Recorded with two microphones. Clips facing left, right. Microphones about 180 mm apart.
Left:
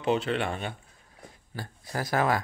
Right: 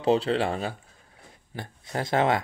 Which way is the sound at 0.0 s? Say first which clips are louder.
Right 4 dB; 35° right (ahead or behind).